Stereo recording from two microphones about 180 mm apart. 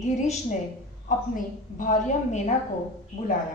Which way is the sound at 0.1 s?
40° left (ahead or behind).